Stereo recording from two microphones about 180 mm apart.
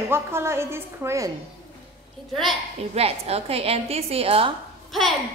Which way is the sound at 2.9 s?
35° right (ahead or behind).